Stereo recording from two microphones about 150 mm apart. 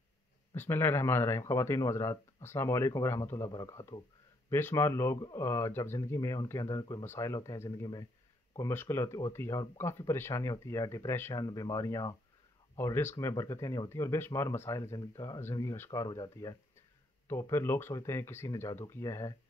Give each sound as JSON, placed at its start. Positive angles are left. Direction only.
{"t": 0.6, "sound": "speech", "side_deg": 15}